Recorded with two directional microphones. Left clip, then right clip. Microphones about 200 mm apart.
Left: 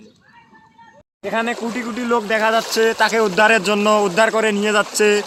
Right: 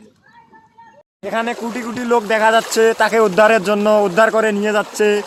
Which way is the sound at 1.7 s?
65° right (ahead or behind).